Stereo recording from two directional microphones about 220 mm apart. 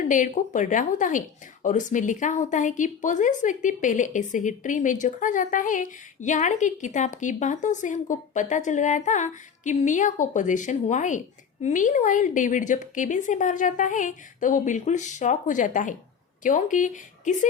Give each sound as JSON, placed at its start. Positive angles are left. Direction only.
{"t": 0.1, "sound": "speech", "side_deg": 35}